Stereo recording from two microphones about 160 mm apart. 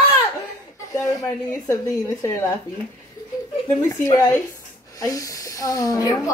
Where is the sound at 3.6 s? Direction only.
20° left (ahead or behind).